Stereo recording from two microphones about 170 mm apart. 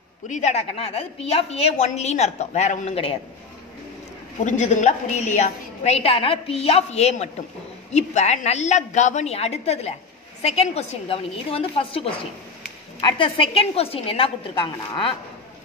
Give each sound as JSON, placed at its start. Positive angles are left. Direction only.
{"t": 0.3, "sound": "a woman's voice", "side_deg": 40}
{"t": 4.5, "sound": "a woman's voice", "side_deg": 45}